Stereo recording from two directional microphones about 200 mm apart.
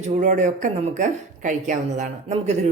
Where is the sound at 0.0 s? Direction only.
35° right (ahead or behind).